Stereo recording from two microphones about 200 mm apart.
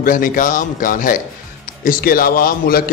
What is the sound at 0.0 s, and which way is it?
A man's voice, 40° left (ahead or behind).